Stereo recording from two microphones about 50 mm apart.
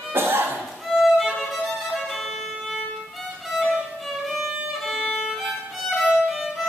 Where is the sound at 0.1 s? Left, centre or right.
Right.